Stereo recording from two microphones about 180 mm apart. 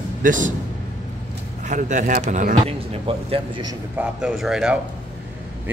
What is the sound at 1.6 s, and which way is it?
A man's voice, 45° right (ahead or behind).